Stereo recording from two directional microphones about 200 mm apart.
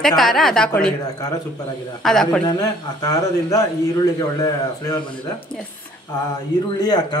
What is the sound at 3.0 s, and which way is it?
Speech, 15° left (ahead or behind).